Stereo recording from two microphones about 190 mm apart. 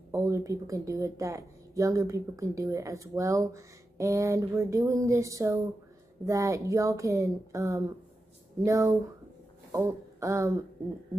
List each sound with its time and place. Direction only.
0.1 s a woman's voice: 15° right (ahead or behind)